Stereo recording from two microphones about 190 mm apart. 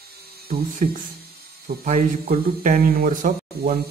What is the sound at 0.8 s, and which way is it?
Speech, 45° right (ahead or behind).